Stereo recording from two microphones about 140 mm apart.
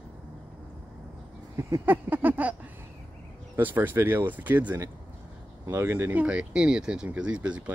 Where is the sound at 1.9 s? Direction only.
15° right (ahead or behind).